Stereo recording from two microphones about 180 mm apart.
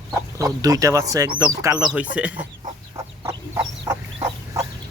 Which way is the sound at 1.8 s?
5° right (ahead or behind).